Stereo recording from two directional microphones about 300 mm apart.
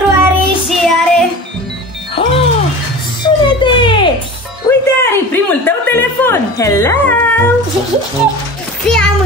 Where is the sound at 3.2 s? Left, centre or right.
Centre.